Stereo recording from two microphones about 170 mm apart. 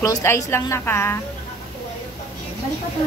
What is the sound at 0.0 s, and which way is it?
A woman's voice, 20° left (ahead or behind).